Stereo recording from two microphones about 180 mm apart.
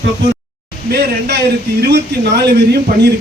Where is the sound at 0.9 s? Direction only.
60° right (ahead or behind).